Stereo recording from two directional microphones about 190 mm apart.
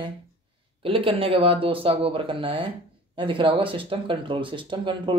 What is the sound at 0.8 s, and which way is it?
Speech, 30° right (ahead or behind).